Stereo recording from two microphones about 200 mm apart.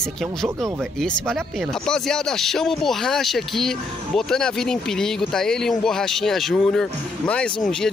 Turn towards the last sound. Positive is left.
turn(degrees=0)  # may be behind; listen again after turning